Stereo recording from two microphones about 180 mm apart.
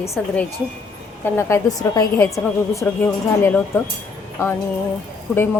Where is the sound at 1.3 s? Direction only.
15° left (ahead or behind).